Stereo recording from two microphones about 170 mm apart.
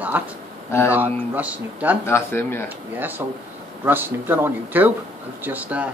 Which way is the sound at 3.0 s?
10° right (ahead or behind).